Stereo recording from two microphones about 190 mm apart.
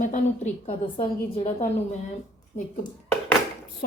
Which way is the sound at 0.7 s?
30° left (ahead or behind).